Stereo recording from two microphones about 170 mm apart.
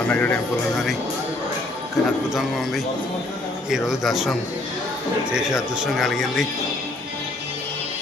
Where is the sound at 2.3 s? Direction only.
Centre (ahead or behind).